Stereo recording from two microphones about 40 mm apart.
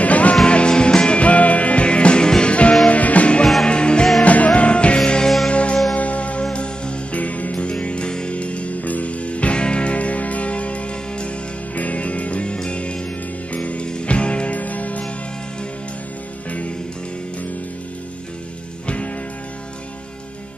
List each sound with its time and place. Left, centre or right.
0.0 s music: left
0.5 s music: left
2.9 s music: left
4.2 s music: left
5.9 s church bell: left
6.5 s music: left
7.2 s music: left